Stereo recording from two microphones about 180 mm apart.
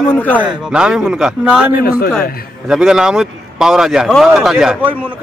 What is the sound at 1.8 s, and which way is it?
Speech, 55° left (ahead or behind).